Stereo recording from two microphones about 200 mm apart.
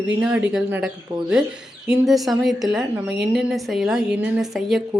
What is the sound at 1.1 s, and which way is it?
Speech, 25° right (ahead or behind).